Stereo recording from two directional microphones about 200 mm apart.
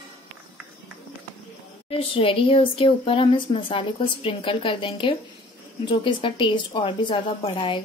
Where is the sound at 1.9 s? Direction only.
25° left (ahead or behind).